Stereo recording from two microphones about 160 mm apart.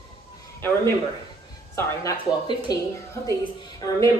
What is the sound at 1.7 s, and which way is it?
Speech, 15° left (ahead or behind).